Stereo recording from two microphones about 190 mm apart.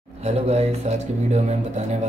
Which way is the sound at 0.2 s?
35° right (ahead or behind).